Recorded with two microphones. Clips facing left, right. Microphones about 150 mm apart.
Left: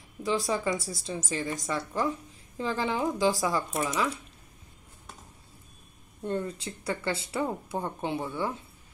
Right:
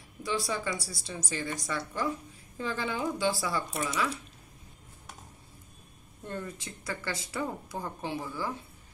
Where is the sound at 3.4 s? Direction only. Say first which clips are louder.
Left 4 dB; 40° left (ahead or behind).